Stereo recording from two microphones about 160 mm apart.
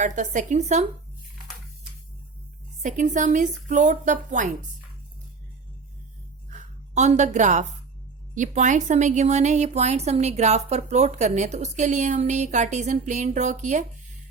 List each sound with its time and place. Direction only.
0.0 s a woman's voice: 50° right (ahead or behind)
2.8 s a woman's voice: 55° right (ahead or behind)
6.5 s a sound: 45° right (ahead or behind)
8.4 s a woman's voice: 50° right (ahead or behind)